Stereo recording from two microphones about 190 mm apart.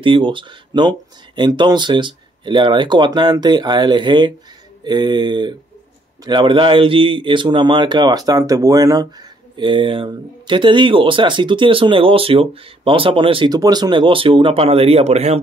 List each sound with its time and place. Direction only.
0.0 s speech: 25° right (ahead or behind)